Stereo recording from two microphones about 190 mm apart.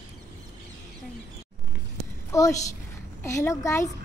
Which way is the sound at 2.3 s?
15° left (ahead or behind).